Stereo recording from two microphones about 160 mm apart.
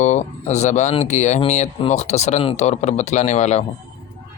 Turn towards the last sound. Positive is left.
turn(degrees=45)  # may be behind; listen again after turning